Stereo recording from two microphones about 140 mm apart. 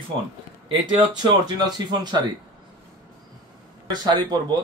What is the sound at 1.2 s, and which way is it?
Speech, 30° right (ahead or behind).